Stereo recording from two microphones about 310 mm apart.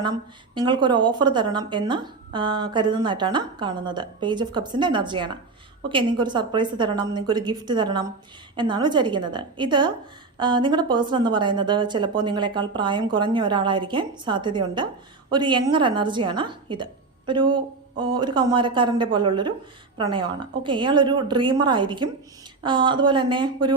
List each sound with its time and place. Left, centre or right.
0.0 s a woman's voice: centre